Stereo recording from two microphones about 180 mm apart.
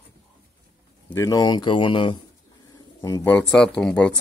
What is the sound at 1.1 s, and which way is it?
Speech, 20° left (ahead or behind).